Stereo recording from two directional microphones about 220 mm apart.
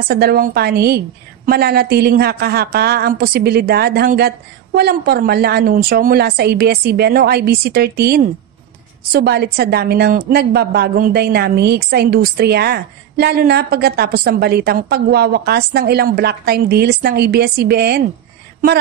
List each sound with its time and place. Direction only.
0.1 s a woman's voice: 45° right (ahead or behind)